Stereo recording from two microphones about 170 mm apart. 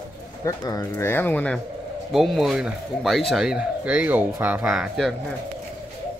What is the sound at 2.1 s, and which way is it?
Speech, centre (ahead or behind).